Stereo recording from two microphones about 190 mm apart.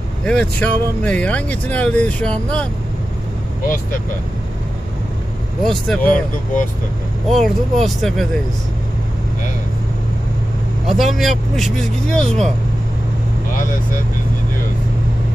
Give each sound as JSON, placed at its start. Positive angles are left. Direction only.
{"t": 0.2, "sound": "speech", "side_deg": 5}
{"t": 3.6, "sound": "speech", "side_deg": 45}
{"t": 5.6, "sound": "speech", "side_deg": 5}
{"t": 6.1, "sound": "speech", "side_deg": 45}
{"t": 7.2, "sound": "speech", "side_deg": 0}
{"t": 10.9, "sound": "speech", "side_deg": 0}